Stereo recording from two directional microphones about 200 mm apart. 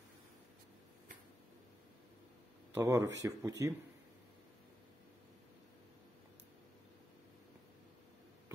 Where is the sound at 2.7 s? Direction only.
15° right (ahead or behind).